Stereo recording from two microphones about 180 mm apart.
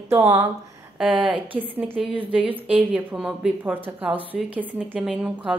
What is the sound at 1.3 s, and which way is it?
Speech, 30° right (ahead or behind).